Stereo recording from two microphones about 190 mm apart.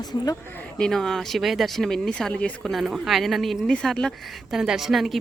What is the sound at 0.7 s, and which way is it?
Speech, 5° left (ahead or behind).